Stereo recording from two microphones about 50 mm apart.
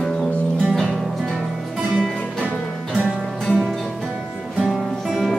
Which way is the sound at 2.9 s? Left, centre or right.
Centre.